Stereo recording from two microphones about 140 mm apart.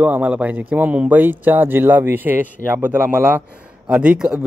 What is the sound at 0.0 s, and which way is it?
Speech, 10° right (ahead or behind).